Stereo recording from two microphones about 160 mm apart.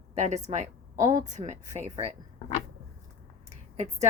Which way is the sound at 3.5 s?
45° right (ahead or behind).